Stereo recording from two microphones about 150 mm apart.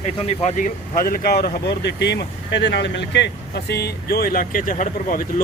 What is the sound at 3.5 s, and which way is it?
Speech, 90° left.